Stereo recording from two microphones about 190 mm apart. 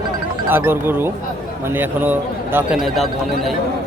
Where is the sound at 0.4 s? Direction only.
10° right (ahead or behind).